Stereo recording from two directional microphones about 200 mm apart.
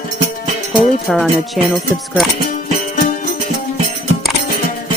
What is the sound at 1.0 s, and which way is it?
Speech, centre (ahead or behind).